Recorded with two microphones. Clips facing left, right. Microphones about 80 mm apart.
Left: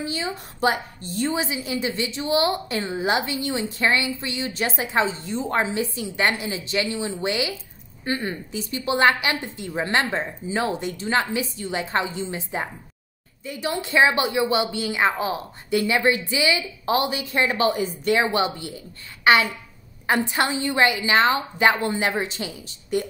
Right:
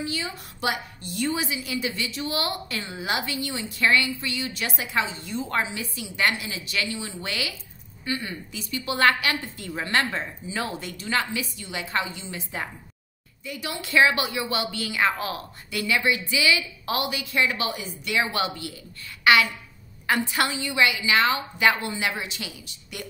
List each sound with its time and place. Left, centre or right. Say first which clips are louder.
0.0 s a woman's voice: left 3 dB; left
8.0 s a woman's voice: left 4 dB; left